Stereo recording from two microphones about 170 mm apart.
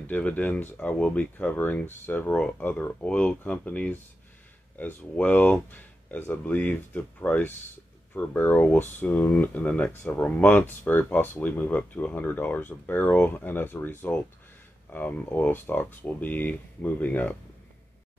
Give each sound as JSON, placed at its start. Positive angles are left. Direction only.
{"t": 0.0, "sound": "speech", "side_deg": 10}